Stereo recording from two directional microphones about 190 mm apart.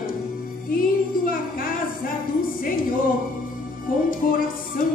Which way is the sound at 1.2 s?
50° left (ahead or behind).